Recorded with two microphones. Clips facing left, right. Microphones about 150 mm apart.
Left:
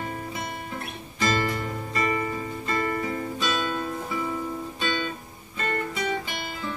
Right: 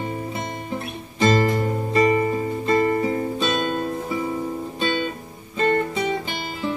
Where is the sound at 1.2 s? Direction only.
35° right (ahead or behind).